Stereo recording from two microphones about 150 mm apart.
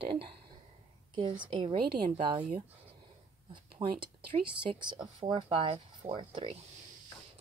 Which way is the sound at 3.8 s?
35° right (ahead or behind).